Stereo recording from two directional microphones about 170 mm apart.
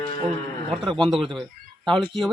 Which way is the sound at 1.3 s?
5° left (ahead or behind).